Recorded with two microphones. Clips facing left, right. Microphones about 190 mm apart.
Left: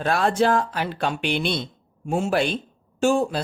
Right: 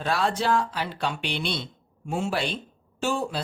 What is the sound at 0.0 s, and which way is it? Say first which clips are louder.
A woman's voice: left 5 dB; 50° left (ahead or behind).